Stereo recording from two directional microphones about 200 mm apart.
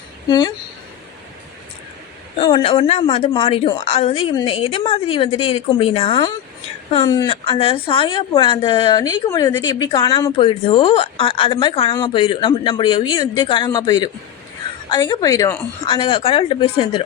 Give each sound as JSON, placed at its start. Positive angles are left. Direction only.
{"t": 0.3, "sound": "a woman's voice", "side_deg": 20}
{"t": 2.4, "sound": "a woman's voice", "side_deg": 25}